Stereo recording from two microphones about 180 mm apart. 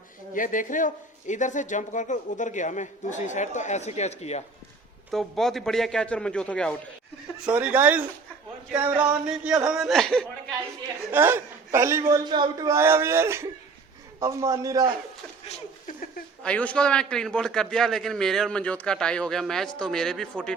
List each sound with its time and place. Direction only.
0.3 s speech: 45° left (ahead or behind)
5.1 s a man's voice: centre (ahead or behind)
7.4 s a man's voice: 10° right (ahead or behind)
9.2 s a man's voice: 5° right (ahead or behind)
11.1 s a man's voice: 10° right (ahead or behind)
16.4 s a man's voice: 5° left (ahead or behind)